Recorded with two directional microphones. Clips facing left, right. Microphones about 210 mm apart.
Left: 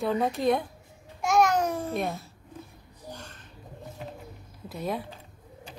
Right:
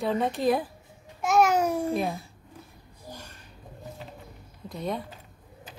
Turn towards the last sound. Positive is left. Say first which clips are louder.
# even
turn(degrees=5)  # may be behind; listen again after turning